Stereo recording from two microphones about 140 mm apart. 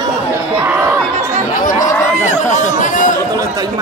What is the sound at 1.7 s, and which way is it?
Chatter, 60° left (ahead or behind).